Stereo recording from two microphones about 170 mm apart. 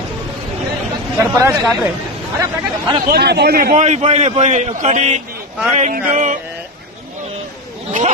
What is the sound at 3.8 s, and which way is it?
A man's voice, 40° right (ahead or behind).